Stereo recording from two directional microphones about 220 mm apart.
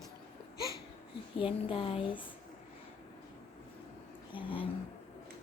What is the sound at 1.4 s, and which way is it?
Speech, 25° left (ahead or behind).